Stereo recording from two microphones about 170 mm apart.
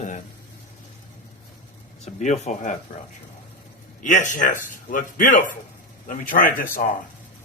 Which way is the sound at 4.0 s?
50° left (ahead or behind).